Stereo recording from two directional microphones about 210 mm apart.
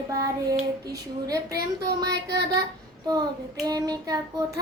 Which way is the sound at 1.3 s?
15° right (ahead or behind).